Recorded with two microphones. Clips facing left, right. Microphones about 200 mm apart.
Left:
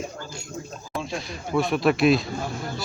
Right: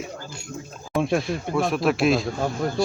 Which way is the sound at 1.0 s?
55° right (ahead or behind).